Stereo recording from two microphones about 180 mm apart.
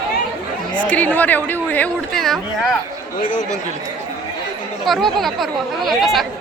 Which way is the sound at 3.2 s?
45° left (ahead or behind).